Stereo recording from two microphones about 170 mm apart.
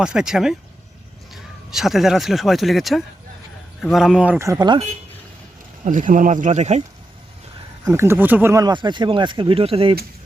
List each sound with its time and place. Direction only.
0.0 s speech: 5° right (ahead or behind); by 4.8 s 20° right (ahead or behind)
5.8 s speech: 50° right (ahead or behind)
7.9 s speech: 15° right (ahead or behind); by 9.9 s 35° right (ahead or behind)